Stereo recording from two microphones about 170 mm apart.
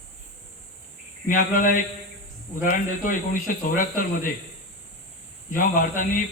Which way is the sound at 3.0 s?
55° left (ahead or behind).